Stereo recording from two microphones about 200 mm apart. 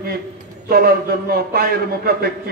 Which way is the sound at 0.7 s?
50° right (ahead or behind).